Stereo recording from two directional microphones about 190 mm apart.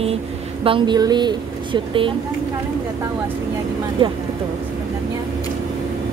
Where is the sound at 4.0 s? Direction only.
25° right (ahead or behind).